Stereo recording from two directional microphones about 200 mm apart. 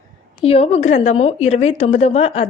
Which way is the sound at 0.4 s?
30° left (ahead or behind).